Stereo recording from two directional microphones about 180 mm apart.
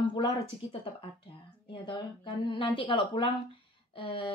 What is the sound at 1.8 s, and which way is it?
Speech, 25° left (ahead or behind).